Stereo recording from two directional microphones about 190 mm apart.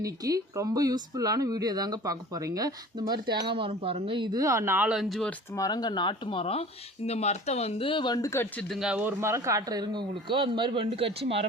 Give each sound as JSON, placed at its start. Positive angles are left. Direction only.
{"t": 0.0, "sound": "speech", "side_deg": -15}
{"t": 5.5, "sound": "speech", "side_deg": 20}
{"t": 8.7, "sound": "speech", "side_deg": -5}